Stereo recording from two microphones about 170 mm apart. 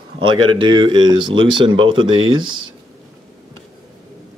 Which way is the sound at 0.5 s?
30° right (ahead or behind).